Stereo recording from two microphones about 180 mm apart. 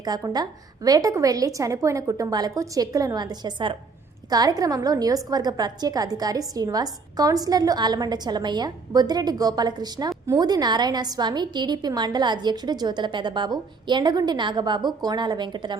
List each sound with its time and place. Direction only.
0.0 s a woman's voice: 20° right (ahead or behind)